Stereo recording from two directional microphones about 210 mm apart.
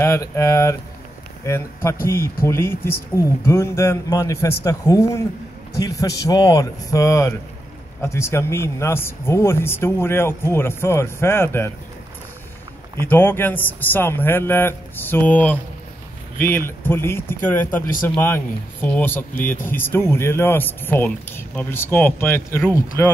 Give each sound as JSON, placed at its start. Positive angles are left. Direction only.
{"t": 0.0, "sound": "speech", "side_deg": 15}
{"t": 13.0, "sound": "speech", "side_deg": 10}